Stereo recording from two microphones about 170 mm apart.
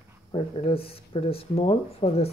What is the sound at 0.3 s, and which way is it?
Speech, 35° left (ahead or behind).